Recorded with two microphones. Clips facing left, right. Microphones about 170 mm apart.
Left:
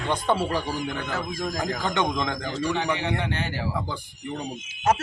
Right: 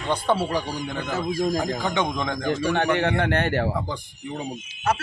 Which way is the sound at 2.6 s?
80° right.